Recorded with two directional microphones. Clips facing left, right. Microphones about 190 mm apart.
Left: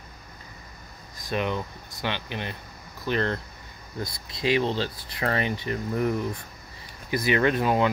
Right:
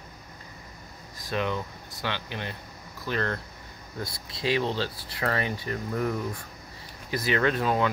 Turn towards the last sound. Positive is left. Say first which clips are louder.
# left 2 dB
turn(degrees=15)  # may be behind; listen again after turning